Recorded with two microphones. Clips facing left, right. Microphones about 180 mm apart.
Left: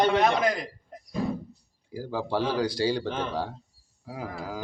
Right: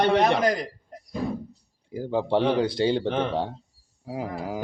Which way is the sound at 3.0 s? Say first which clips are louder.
Right 5 dB; 65° right (ahead or behind).